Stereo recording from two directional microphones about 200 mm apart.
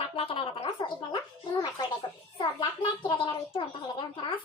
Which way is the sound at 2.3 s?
25° left (ahead or behind).